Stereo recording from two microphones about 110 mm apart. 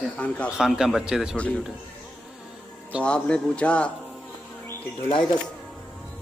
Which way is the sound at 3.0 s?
10° left (ahead or behind).